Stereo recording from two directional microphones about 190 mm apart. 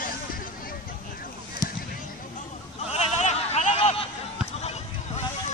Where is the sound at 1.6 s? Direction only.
20° left (ahead or behind).